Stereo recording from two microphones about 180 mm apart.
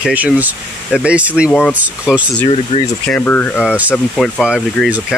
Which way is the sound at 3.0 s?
5° left (ahead or behind).